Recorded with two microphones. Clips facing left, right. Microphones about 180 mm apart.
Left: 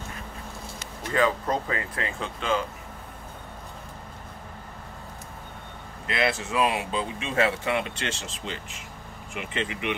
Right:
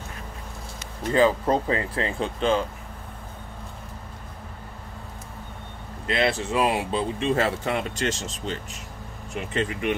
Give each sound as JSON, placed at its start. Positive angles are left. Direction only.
{"t": 1.1, "sound": "speech", "side_deg": -30}
{"t": 6.0, "sound": "speech", "side_deg": -30}